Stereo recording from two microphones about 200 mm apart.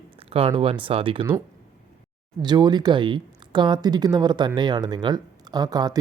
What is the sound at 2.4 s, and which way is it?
Speech, 20° right (ahead or behind).